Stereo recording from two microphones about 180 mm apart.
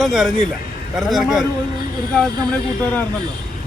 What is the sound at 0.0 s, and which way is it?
Speech, centre (ahead or behind).